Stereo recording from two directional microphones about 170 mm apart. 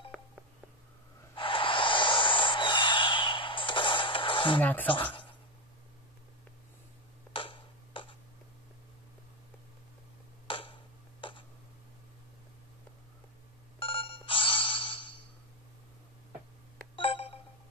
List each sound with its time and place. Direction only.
1.3 s snort: 30° left (ahead or behind)
4.6 s speech: 10° left (ahead or behind)
7.3 s tick-tock: 30° left (ahead or behind)
10.4 s tick-tock: 30° left (ahead or behind)
13.7 s ringtone: 30° left (ahead or behind)
16.9 s telephone: 30° left (ahead or behind)